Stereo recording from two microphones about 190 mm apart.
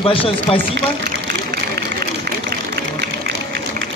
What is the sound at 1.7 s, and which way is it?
Vehicle, 55° right (ahead or behind).